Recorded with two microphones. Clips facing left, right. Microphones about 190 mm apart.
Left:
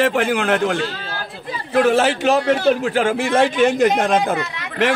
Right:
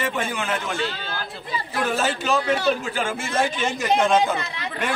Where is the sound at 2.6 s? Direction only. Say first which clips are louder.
Left 7 dB; 65° left (ahead or behind).